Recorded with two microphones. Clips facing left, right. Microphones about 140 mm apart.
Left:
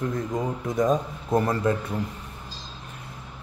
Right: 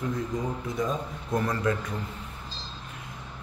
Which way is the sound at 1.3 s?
30° left (ahead or behind).